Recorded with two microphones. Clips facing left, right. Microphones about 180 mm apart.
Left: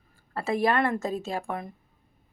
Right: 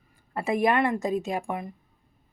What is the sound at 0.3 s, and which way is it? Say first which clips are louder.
A woman's voice: right 1 dB; 15° right (ahead or behind).